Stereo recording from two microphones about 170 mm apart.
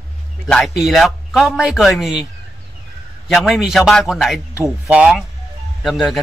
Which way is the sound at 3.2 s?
Centre (ahead or behind).